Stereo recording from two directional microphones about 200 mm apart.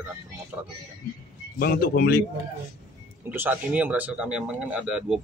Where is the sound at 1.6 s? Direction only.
50° left (ahead or behind).